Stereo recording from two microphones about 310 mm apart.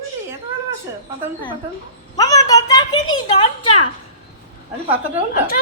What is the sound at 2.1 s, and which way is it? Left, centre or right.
A woman's voice, centre.